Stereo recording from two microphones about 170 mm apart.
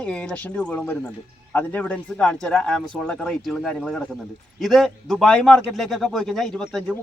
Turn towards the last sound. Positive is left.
turn(degrees=0)  # may be behind; listen again after turning